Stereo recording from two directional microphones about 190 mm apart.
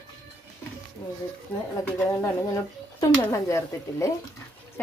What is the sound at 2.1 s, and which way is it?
Speech, 15° left (ahead or behind).